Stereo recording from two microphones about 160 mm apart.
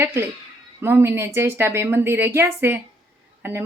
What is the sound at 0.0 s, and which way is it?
Speech, 15° right (ahead or behind).